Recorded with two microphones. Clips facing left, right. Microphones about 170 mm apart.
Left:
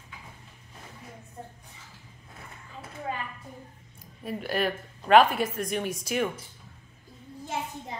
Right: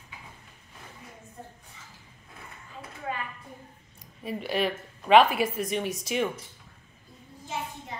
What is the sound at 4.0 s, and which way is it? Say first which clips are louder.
Speech: even; centre (ahead or behind).